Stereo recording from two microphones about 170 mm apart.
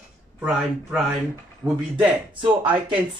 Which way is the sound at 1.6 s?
15° right (ahead or behind).